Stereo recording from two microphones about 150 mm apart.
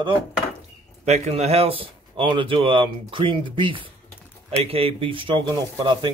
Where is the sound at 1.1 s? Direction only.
45° right (ahead or behind).